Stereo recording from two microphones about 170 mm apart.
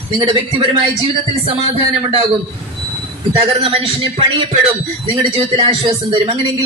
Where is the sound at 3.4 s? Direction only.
35° right (ahead or behind).